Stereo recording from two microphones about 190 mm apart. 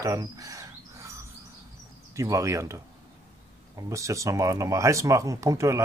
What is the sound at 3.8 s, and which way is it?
Speech, 15° right (ahead or behind).